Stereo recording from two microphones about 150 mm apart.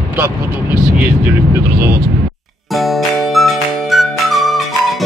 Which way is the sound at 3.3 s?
Centre (ahead or behind).